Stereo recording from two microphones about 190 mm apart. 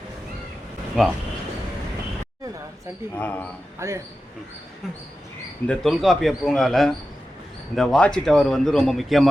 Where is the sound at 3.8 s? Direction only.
15° right (ahead or behind).